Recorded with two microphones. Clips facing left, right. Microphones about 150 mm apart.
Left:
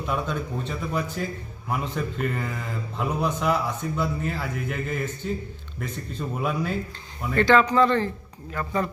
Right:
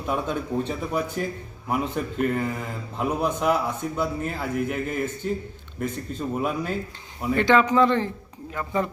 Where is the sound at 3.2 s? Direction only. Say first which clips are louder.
Right 1 dB; 10° right (ahead or behind).